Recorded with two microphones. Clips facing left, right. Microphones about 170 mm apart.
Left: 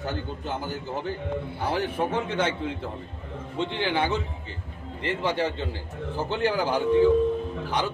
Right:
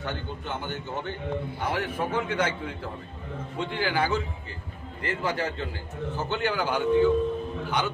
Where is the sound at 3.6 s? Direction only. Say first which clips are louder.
Left 1 dB; 25° left (ahead or behind).